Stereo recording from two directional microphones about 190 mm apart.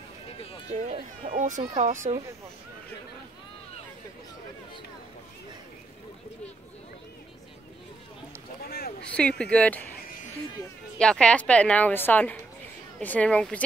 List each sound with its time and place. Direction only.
0.7 s speech: 40° right (ahead or behind)
8.6 s a sound: 55° left (ahead or behind)
9.4 s a woman's voice: 5° left (ahead or behind)
11.0 s a woman's voice: 5° left (ahead or behind)